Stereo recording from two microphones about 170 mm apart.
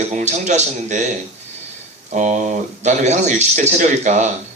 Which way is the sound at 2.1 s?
45° right (ahead or behind).